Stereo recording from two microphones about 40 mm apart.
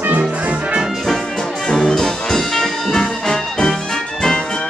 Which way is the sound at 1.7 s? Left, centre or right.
Left.